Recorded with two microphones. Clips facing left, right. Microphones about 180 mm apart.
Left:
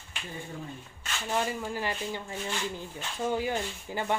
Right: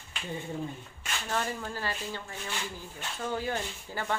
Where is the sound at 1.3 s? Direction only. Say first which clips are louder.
Left 3 dB; 10° left (ahead or behind).